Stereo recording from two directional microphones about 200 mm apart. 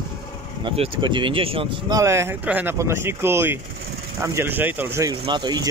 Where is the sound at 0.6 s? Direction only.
25° right (ahead or behind).